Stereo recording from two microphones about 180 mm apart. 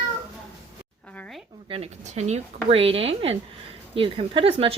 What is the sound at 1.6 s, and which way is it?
A woman's voice, 35° right (ahead or behind).